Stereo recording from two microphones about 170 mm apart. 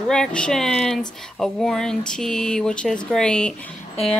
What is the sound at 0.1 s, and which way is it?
Speech, 5° left (ahead or behind).